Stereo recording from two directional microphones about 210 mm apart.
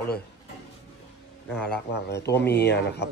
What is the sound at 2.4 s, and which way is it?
Speech, 50° left (ahead or behind).